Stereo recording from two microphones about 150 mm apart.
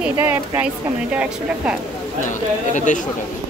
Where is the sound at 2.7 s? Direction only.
55° left (ahead or behind).